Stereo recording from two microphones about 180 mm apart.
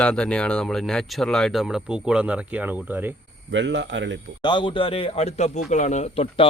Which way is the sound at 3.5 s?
90° right.